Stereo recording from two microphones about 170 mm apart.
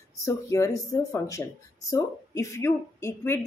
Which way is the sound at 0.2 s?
20° left (ahead or behind).